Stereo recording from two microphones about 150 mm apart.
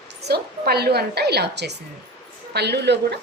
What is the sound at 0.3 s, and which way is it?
A woman's voice, 90° right.